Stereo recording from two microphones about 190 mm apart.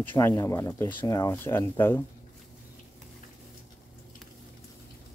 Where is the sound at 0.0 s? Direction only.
10° left (ahead or behind).